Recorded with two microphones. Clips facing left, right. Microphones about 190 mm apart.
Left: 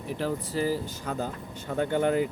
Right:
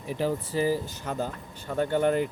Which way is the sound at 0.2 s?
5° right (ahead or behind).